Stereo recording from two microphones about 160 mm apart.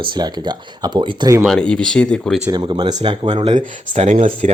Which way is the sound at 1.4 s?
5° left (ahead or behind).